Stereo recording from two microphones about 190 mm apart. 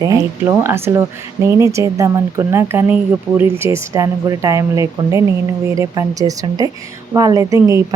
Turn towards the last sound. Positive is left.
turn(degrees=-15)  # may be behind; listen again after turning